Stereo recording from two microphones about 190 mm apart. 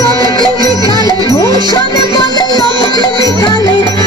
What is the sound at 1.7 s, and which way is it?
Music, 20° left (ahead or behind).